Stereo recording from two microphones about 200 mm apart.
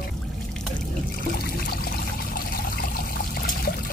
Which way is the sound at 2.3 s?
45° left (ahead or behind).